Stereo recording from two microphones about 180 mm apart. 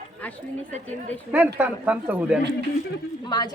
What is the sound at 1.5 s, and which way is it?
Speech, 10° right (ahead or behind).